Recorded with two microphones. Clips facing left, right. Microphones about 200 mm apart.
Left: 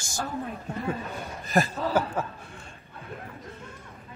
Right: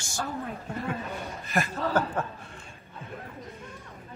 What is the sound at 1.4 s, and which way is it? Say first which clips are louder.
Speech: left 5 dB; 35° left (ahead or behind).